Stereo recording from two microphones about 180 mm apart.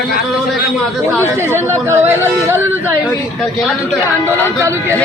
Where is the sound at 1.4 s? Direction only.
15° right (ahead or behind).